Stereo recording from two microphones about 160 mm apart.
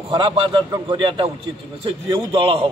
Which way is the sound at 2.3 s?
35° right (ahead or behind).